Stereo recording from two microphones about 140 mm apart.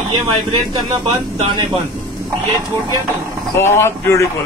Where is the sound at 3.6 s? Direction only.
20° left (ahead or behind).